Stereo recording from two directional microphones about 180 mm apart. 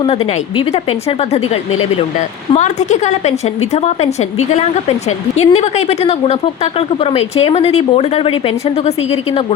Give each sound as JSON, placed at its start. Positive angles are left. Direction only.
{"t": 0.0, "sound": "speech", "side_deg": 30}